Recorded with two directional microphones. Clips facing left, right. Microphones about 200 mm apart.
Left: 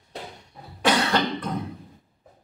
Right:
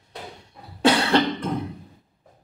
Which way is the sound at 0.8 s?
25° right (ahead or behind).